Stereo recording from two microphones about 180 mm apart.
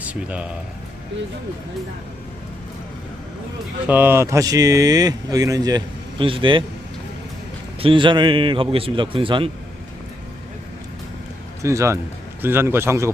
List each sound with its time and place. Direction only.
0.0 s speech: 5° right (ahead or behind)
3.8 s speech: 10° right (ahead or behind); by 6.7 s 30° right (ahead or behind)
7.8 s speech: 30° right (ahead or behind)
11.6 s a man's voice: 15° right (ahead or behind)